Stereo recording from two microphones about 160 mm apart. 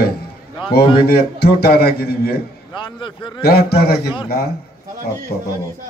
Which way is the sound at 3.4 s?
75° left (ahead or behind).